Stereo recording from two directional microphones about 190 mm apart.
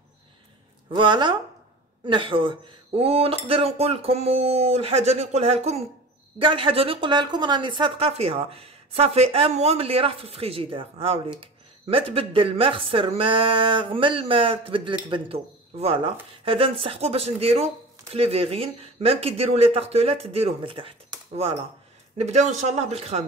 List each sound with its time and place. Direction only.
0.8 s speech: 25° right (ahead or behind)
22.1 s speech: 35° right (ahead or behind)